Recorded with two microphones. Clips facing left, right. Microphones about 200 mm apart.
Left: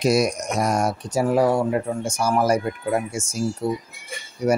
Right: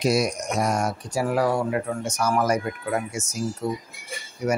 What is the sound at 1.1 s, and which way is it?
Speech, 25° left (ahead or behind).